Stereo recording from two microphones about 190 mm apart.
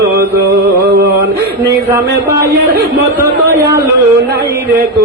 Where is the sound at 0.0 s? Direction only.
55° right (ahead or behind).